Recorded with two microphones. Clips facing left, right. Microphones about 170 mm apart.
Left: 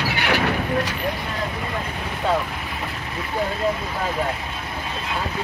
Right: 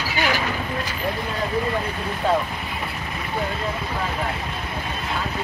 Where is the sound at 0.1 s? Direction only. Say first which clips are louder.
Right 2 dB; 65° left (ahead or behind).